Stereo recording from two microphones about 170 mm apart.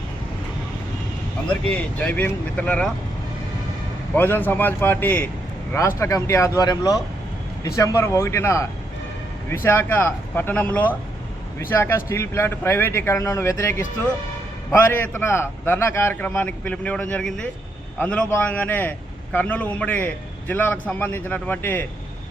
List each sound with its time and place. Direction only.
2.0 s a man's voice: 10° left (ahead or behind)
4.1 s a man's voice: 10° left (ahead or behind)
9.6 s a man's voice: 10° left (ahead or behind)